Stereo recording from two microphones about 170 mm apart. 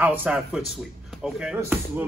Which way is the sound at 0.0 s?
10° right (ahead or behind).